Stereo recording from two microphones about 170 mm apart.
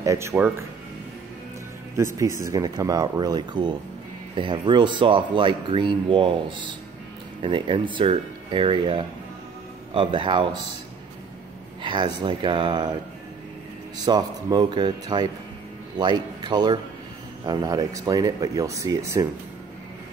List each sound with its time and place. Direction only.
0.0 s speech: 15° right (ahead or behind)
2.0 s speech: 15° right (ahead or behind)
11.8 s speech: 25° right (ahead or behind)
13.9 s speech: 25° right (ahead or behind)